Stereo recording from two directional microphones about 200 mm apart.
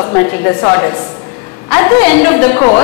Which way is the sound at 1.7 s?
15° left (ahead or behind).